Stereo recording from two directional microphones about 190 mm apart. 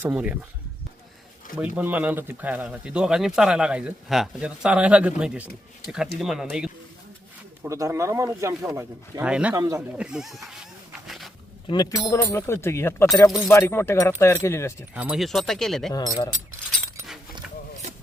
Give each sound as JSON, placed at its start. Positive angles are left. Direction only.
{"t": 0.0, "sound": "speech", "side_deg": -5}
{"t": 1.5, "sound": "speech", "side_deg": -5}
{"t": 7.6, "sound": "speech", "side_deg": -15}
{"t": 9.6, "sound": "speech", "side_deg": -15}
{"t": 10.0, "sound": "speech", "side_deg": -5}
{"t": 11.0, "sound": "dog", "side_deg": 0}
{"t": 11.7, "sound": "speech", "side_deg": 20}
{"t": 14.9, "sound": "speech", "side_deg": -5}
{"t": 15.9, "sound": "speech", "side_deg": 20}